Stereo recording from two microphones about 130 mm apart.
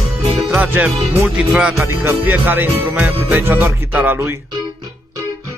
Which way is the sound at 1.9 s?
15° right (ahead or behind).